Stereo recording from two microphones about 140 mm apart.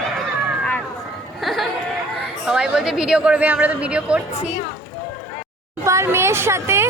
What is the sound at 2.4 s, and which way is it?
A woman's voice, 5° right (ahead or behind).